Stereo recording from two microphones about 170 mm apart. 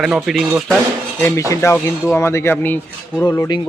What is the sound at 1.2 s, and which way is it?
Speech, 15° left (ahead or behind).